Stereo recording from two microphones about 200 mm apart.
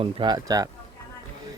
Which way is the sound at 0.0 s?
20° right (ahead or behind).